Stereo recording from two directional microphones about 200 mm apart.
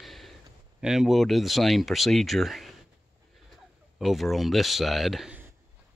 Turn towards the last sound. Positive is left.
turn(degrees=0)  # may be behind; listen again after turning